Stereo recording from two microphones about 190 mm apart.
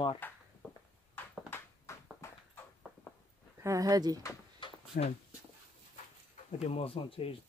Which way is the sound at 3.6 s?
15° right (ahead or behind).